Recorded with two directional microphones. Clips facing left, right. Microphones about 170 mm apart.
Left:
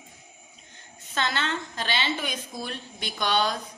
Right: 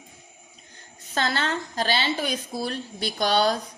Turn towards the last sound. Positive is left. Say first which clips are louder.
# right 4 dB
turn(degrees=-35)  # may be behind; listen again after turning